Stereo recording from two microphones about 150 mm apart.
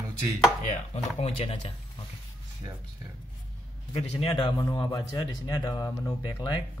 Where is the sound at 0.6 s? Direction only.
45° left (ahead or behind).